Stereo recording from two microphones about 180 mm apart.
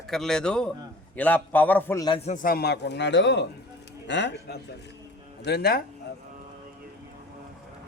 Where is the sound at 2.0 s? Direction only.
30° left (ahead or behind).